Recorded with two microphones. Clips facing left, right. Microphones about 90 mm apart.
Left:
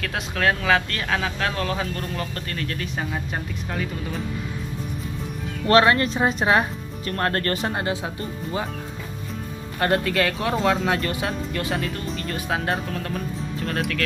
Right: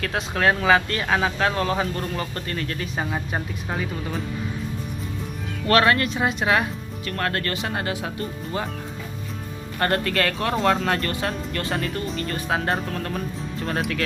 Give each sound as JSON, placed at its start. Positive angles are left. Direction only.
{"t": 0.0, "sound": "speech", "side_deg": -5}
{"t": 5.7, "sound": "speech", "side_deg": 25}
{"t": 7.7, "sound": "speech", "side_deg": 20}
{"t": 9.8, "sound": "speech", "side_deg": 5}